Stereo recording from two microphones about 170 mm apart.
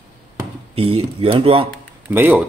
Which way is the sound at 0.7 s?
35° right (ahead or behind).